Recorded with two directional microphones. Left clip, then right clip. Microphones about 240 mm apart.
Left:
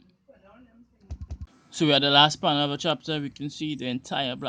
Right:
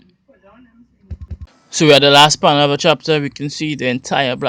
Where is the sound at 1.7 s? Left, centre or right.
Right.